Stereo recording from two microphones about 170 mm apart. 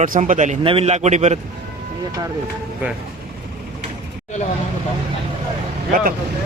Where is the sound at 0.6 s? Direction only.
35° right (ahead or behind).